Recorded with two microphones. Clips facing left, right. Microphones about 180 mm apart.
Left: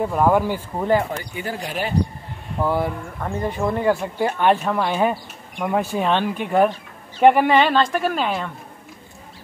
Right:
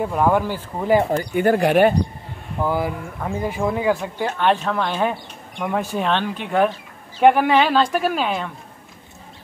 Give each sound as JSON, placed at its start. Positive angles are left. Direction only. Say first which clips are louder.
{"t": 0.0, "sound": "speech", "louder": "left 1 dB", "side_deg": 0}
{"t": 1.1, "sound": "speech", "louder": "right 10 dB", "side_deg": -55}
{"t": 2.6, "sound": "speech", "louder": "even", "side_deg": 0}